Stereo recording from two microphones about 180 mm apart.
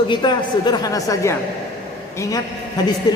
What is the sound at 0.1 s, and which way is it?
A woman's voice, 25° left (ahead or behind).